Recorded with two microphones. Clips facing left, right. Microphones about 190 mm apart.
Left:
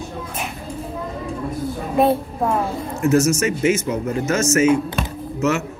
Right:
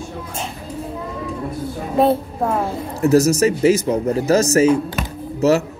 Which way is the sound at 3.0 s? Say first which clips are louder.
Right 3 dB; 35° right (ahead or behind).